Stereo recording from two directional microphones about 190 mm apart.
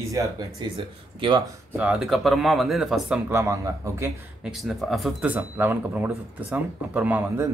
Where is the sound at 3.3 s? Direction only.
15° right (ahead or behind).